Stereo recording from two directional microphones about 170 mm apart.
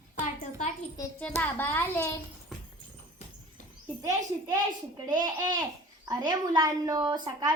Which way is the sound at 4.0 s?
20° right (ahead or behind).